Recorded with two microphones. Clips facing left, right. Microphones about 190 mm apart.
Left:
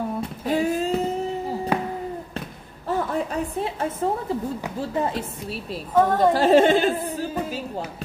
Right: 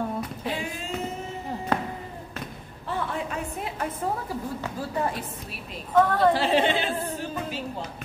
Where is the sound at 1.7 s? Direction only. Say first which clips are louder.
Left 1 dB; 10° left (ahead or behind).